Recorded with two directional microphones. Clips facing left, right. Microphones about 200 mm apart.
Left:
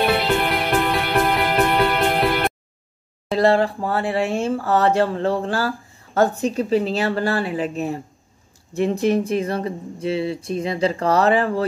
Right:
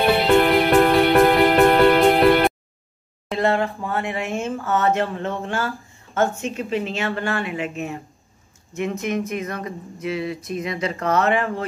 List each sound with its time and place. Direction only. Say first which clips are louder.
0.0 s music: right 3 dB; centre (ahead or behind)
3.3 s speech: left 4 dB; 35° left (ahead or behind)